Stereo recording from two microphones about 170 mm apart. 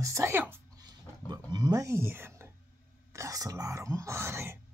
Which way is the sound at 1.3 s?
25° right (ahead or behind).